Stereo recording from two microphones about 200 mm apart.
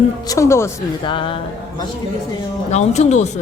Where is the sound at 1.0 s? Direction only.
25° left (ahead or behind).